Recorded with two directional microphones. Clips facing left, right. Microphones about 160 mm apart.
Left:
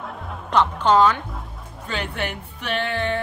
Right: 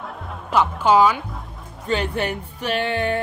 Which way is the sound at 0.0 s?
Centre (ahead or behind).